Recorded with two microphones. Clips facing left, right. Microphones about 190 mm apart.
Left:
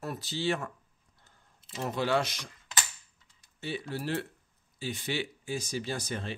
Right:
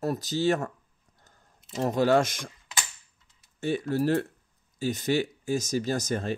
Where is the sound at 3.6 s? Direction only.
45° right (ahead or behind).